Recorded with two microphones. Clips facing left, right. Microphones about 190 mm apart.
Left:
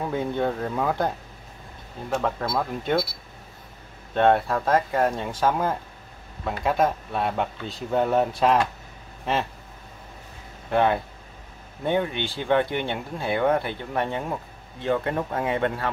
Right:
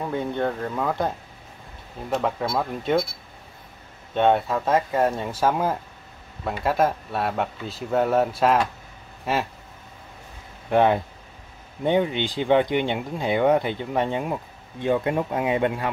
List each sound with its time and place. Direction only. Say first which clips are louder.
0.0 s speech: even; 5° left (ahead or behind)
4.1 s speech: even; centre (ahead or behind)
10.7 s speech: right 3 dB; 15° right (ahead or behind)